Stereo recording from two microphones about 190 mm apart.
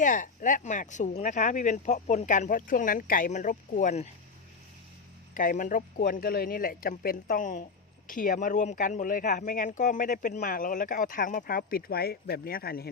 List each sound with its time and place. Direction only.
0.0 s speech: 45° left (ahead or behind)
5.3 s speech: 45° left (ahead or behind)